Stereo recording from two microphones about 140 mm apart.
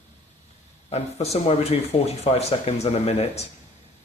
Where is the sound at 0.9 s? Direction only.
50° left (ahead or behind).